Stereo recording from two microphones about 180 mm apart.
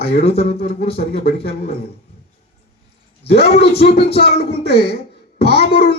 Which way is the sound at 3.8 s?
65° left (ahead or behind).